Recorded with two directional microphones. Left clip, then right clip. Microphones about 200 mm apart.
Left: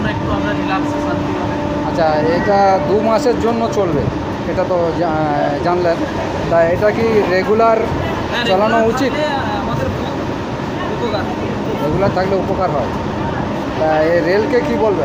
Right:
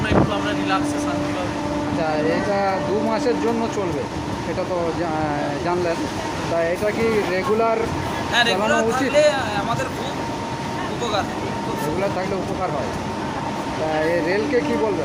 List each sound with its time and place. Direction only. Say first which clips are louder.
2.6 s speech: left 8 dB; 5° right (ahead or behind)
7.3 s speech: left 7 dB; 5° right (ahead or behind)
8.4 s speech: left 5 dB; 15° right (ahead or behind)